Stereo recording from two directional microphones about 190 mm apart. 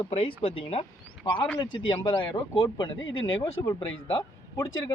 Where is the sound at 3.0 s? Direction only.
90° left.